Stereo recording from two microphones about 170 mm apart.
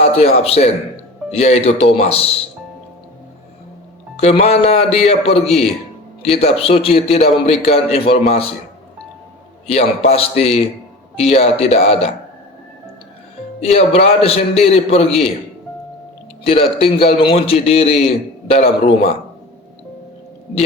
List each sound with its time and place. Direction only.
0.0 s a man's voice: 35° left (ahead or behind)
4.2 s a man's voice: 35° left (ahead or behind)
9.6 s a man's voice: 40° left (ahead or behind)
13.6 s a man's voice: 35° left (ahead or behind)
16.5 s a man's voice: 35° left (ahead or behind)